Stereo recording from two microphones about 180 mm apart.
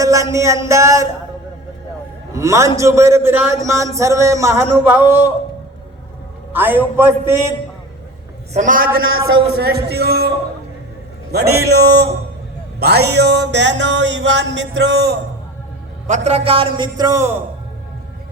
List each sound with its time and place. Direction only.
0.0 s a man's voice: 15° right (ahead or behind)
2.3 s a man's voice: 15° right (ahead or behind)
6.5 s a man's voice: 10° right (ahead or behind)
8.5 s a man's voice: 50° right (ahead or behind)
9.3 s speech: 65° right (ahead or behind)
11.3 s music: 65° right (ahead or behind)
16.0 s a man's voice: 40° right (ahead or behind); by 17.3 s 20° right (ahead or behind)